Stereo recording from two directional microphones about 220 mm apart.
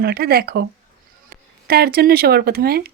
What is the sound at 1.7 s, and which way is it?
Speech, 45° right (ahead or behind).